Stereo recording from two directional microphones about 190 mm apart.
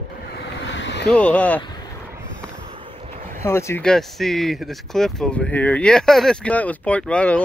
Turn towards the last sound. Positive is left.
turn(degrees=5)  # may be behind; listen again after turning